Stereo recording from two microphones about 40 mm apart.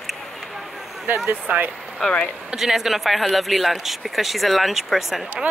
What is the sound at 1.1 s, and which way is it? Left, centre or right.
Speech, right.